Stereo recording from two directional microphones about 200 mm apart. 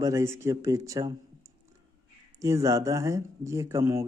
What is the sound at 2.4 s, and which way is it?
Speech, 15° right (ahead or behind).